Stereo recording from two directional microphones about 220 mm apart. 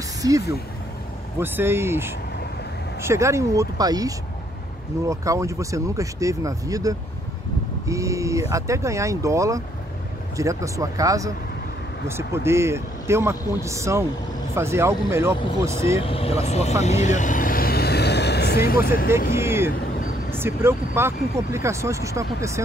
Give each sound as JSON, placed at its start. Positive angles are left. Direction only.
{"t": 0.2, "sound": "speech", "side_deg": -15}
{"t": 1.4, "sound": "speech", "side_deg": -10}
{"t": 16.0, "sound": "vehicle", "side_deg": 25}
{"t": 19.3, "sound": "vehicle", "side_deg": -10}
{"t": 20.2, "sound": "speech", "side_deg": -10}